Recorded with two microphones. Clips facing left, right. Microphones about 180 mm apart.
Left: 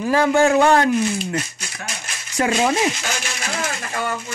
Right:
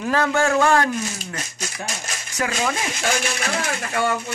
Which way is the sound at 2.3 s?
25° left (ahead or behind).